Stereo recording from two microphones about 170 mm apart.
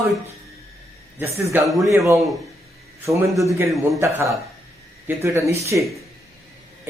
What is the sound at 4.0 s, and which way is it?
Speech, 15° right (ahead or behind).